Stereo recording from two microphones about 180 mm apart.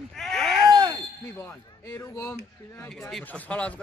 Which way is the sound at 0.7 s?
25° right (ahead or behind).